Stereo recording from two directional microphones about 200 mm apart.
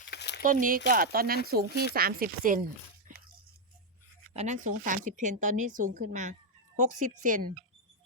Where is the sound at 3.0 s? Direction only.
45° right (ahead or behind).